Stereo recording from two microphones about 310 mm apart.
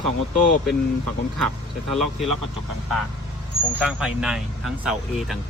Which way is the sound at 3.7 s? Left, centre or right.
Centre.